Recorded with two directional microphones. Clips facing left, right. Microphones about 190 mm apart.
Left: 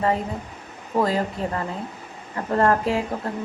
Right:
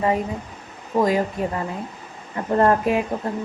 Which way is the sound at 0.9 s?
15° right (ahead or behind).